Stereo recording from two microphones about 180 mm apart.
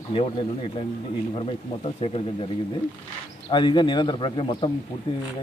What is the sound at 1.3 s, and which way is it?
Speech, 30° left (ahead or behind).